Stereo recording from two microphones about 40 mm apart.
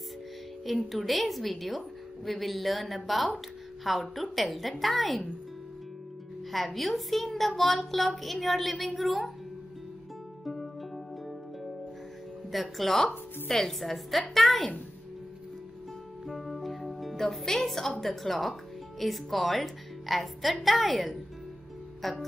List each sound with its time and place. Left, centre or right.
0.9 s speech: centre
6.5 s speech: centre
10.4 s music: centre
12.4 s speech: centre
16.3 s music: centre
18.0 s speech: centre